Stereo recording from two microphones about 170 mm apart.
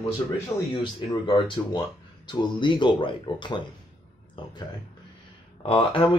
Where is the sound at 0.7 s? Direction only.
30° left (ahead or behind).